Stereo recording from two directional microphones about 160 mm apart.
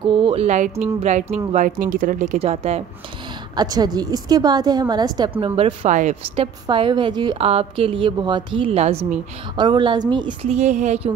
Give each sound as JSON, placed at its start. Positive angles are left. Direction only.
{"t": 0.0, "sound": "speech", "side_deg": -35}
{"t": 2.3, "sound": "a woman's voice", "side_deg": -40}
{"t": 3.5, "sound": "a woman's voice", "side_deg": -25}
{"t": 5.9, "sound": "a woman's voice", "side_deg": -50}
{"t": 7.3, "sound": "a woman's voice", "side_deg": -40}
{"t": 10.5, "sound": "speech", "side_deg": -45}